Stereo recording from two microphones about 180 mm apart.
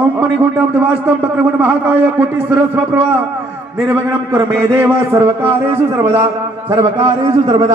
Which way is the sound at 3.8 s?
15° right (ahead or behind).